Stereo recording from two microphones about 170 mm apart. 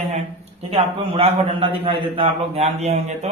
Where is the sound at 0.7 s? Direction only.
35° right (ahead or behind).